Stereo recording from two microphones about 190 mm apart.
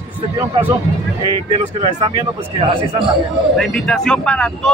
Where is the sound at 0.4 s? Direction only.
10° right (ahead or behind).